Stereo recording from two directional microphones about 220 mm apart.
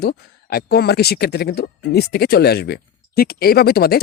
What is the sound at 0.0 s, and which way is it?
Speech, 45° left (ahead or behind).